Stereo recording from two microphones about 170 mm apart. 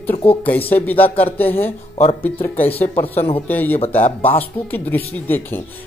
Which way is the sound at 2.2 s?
10° left (ahead or behind).